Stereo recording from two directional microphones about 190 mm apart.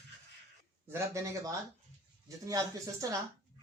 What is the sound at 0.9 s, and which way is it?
Speech, 15° right (ahead or behind).